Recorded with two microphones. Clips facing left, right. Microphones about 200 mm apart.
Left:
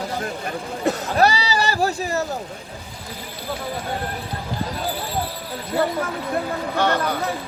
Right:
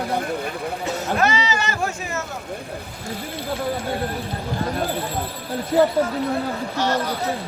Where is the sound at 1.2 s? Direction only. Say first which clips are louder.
Left 5 dB; 35° left (ahead or behind).